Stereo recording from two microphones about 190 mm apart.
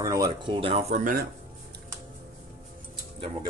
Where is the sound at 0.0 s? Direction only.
20° right (ahead or behind); by 1.2 s 40° right (ahead or behind).